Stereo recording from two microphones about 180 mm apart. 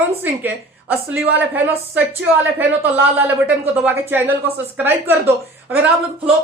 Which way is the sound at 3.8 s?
10° right (ahead or behind).